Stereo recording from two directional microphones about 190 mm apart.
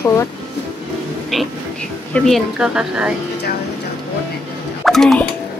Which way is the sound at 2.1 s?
Centre (ahead or behind).